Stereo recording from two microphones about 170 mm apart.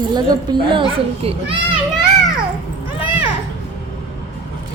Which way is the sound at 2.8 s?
30° left (ahead or behind).